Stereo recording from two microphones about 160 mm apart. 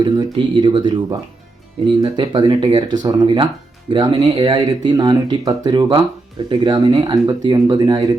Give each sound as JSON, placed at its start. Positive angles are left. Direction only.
{"t": 0.0, "sound": "speech", "side_deg": -30}
{"t": 2.0, "sound": "speech", "side_deg": -25}